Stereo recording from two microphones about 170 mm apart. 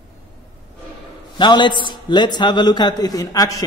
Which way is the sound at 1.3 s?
25° left (ahead or behind).